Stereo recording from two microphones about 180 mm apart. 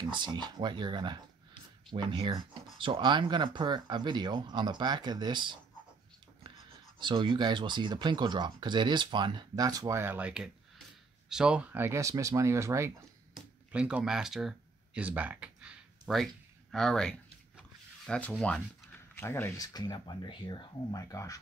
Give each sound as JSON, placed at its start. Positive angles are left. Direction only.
{"t": 0.1, "sound": "speech", "side_deg": -25}
{"t": 7.0, "sound": "speech", "side_deg": -25}
{"t": 13.3, "sound": "speech", "side_deg": -5}
{"t": 15.0, "sound": "a sound", "side_deg": -10}
{"t": 16.7, "sound": "speech", "side_deg": 0}